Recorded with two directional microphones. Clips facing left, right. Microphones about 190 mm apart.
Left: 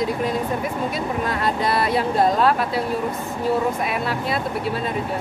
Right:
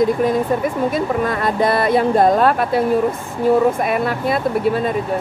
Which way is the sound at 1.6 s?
50° right (ahead or behind).